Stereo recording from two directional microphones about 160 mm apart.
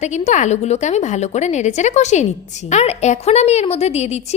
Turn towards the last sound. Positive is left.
turn(degrees=40)  # may be behind; listen again after turning